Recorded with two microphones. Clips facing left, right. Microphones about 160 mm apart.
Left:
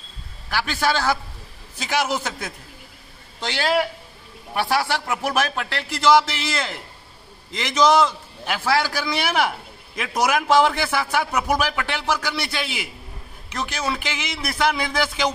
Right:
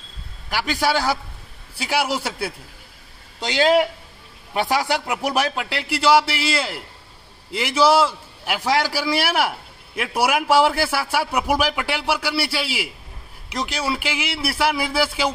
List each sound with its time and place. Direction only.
0.5 s a man's voice: 15° right (ahead or behind)